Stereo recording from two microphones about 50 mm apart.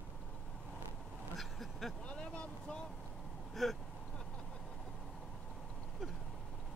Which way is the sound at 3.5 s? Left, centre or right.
Centre.